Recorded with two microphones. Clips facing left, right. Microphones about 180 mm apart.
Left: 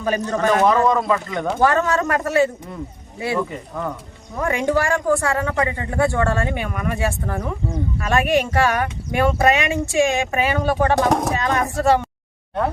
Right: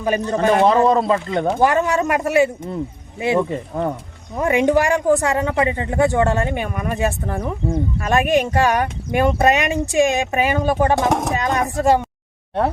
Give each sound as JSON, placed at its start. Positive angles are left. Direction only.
{"t": 0.0, "sound": "a man's voice", "side_deg": -15}
{"t": 1.6, "sound": "a man's voice", "side_deg": -15}
{"t": 3.5, "sound": "speech", "side_deg": -35}
{"t": 4.4, "sound": "a man's voice", "side_deg": -20}